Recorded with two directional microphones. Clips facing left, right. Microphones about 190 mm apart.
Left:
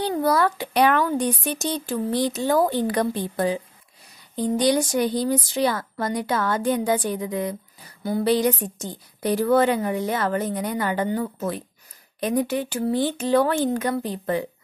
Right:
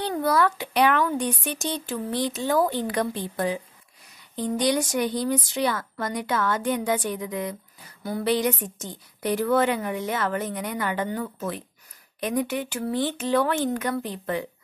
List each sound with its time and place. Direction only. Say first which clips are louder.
0.2 s a woman's voice: even; 35° left (ahead or behind)